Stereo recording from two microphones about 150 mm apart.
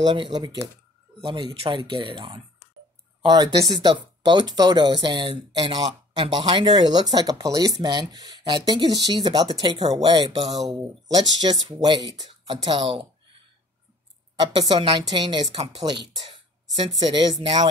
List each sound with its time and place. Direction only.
0.0 s speech: 30° right (ahead or behind)
14.5 s speech: 30° right (ahead or behind)